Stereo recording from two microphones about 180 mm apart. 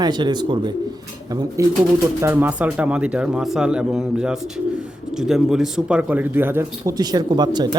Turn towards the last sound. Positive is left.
turn(degrees=-25)  # may be behind; listen again after turning